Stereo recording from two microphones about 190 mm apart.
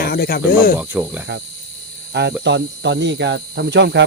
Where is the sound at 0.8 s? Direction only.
5° right (ahead or behind).